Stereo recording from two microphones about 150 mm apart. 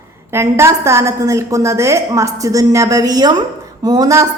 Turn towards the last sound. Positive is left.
turn(degrees=-25)  # may be behind; listen again after turning